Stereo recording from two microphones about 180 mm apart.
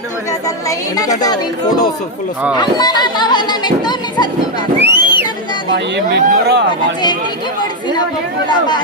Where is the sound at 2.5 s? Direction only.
20° left (ahead or behind).